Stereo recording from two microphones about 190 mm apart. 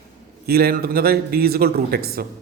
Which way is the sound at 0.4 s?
55° right (ahead or behind).